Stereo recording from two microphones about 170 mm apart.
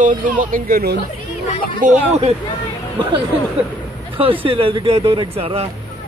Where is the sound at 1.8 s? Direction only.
40° right (ahead or behind).